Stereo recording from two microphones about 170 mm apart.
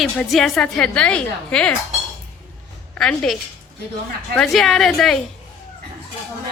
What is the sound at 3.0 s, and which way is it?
Speech, 5° left (ahead or behind).